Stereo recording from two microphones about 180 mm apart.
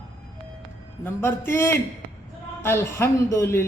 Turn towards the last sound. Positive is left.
turn(degrees=15)  # may be behind; listen again after turning